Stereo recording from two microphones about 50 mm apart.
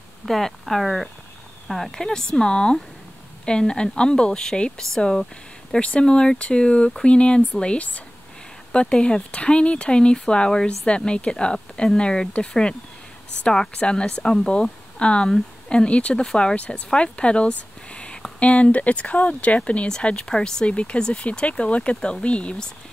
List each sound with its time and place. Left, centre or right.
0.2 s a woman's voice: centre; by 8.0 s left
9.0 s speech: left
13.4 s a woman's voice: centre